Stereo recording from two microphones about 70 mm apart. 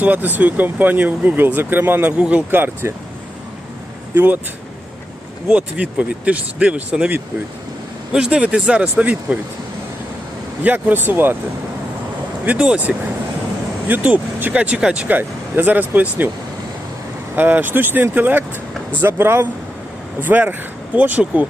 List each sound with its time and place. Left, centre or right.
0.0 s speech: right
4.1 s speech: right
5.5 s speech: centre
8.1 s speech: centre
10.6 s speech: right
12.5 s speech: centre
13.8 s speech: right
17.3 s speech: right
19.1 s speech: right